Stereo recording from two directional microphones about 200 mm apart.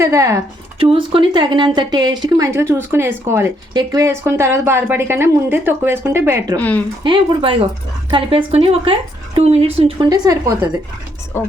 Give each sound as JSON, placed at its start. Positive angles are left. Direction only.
{"t": 0.0, "sound": "speech", "side_deg": -15}
{"t": 0.8, "sound": "speech", "side_deg": -25}
{"t": 6.6, "sound": "speech", "side_deg": 5}
{"t": 7.0, "sound": "speech", "side_deg": -25}
{"t": 10.1, "sound": "speech", "side_deg": -15}